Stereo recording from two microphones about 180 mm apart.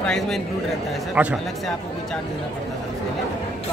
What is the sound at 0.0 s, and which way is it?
A man's voice, centre (ahead or behind).